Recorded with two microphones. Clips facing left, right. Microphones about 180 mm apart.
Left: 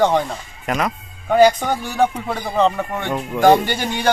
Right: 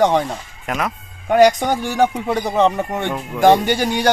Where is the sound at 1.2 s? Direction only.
15° right (ahead or behind).